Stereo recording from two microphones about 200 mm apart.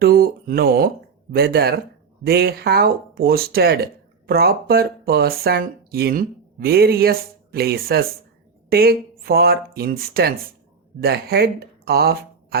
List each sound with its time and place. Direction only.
0.0 s speech: 50° right (ahead or behind)